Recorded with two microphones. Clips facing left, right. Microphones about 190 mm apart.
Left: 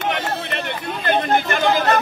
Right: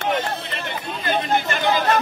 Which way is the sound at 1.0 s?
55° left (ahead or behind).